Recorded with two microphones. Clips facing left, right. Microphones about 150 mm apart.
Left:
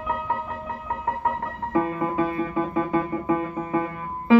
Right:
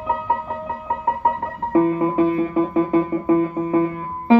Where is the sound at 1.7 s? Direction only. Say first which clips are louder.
Right 7 dB; 35° right (ahead or behind).